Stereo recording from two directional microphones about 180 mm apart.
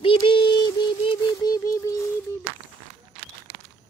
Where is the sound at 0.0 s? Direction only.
30° left (ahead or behind).